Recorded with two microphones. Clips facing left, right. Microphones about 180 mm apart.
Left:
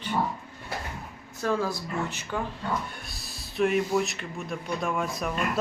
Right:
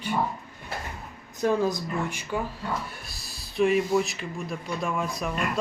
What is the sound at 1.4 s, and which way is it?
Speech, 20° right (ahead or behind).